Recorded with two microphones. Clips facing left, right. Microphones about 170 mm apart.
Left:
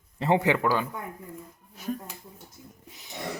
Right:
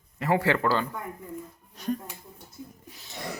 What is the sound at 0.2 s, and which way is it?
A man's voice, 25° left (ahead or behind).